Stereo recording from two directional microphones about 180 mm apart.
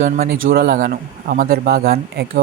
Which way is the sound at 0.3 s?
75° right (ahead or behind).